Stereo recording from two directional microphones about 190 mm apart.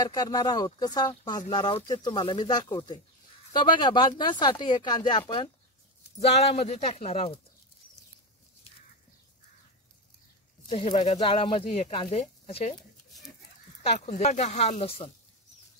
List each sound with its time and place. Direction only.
0.0 s speech: 20° left (ahead or behind)
10.7 s speech: 30° left (ahead or behind)
12.2 s speech: 40° left (ahead or behind)
13.8 s speech: 40° left (ahead or behind)